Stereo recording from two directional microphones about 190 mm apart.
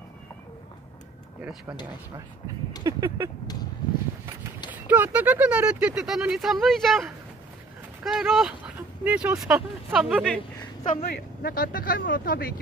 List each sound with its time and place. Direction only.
1.4 s speech: 5° right (ahead or behind)
2.8 s a sound: 20° right (ahead or behind)
4.6 s speech: 10° right (ahead or behind)
11.0 s speech: 50° left (ahead or behind)